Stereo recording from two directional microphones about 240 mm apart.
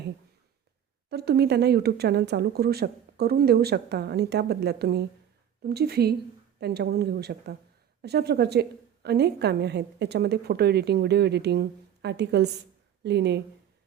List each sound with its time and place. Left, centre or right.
1.1 s a woman's voice: right